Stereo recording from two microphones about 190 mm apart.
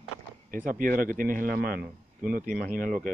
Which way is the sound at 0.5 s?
45° right (ahead or behind).